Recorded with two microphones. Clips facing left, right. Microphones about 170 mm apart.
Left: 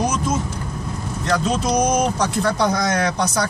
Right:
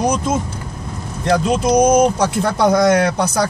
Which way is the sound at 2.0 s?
50° right (ahead or behind).